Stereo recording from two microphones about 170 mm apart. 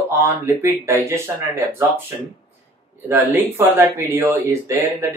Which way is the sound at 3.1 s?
15° right (ahead or behind).